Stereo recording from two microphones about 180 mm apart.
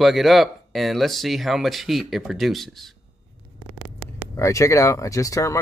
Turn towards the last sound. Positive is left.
turn(degrees=15)  # may be behind; listen again after turning